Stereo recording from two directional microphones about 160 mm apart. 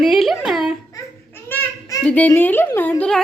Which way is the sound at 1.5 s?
10° left (ahead or behind).